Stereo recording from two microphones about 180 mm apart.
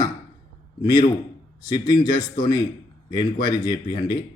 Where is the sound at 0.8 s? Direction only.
20° left (ahead or behind).